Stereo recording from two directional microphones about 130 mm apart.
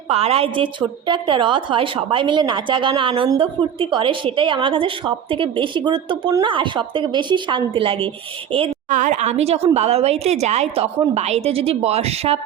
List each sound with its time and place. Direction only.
0.1 s a woman's voice: 50° right (ahead or behind)
8.9 s a woman's voice: 70° right (ahead or behind); by 12.4 s 50° right (ahead or behind)